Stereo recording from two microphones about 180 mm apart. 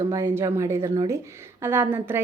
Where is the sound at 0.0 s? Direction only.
15° right (ahead or behind).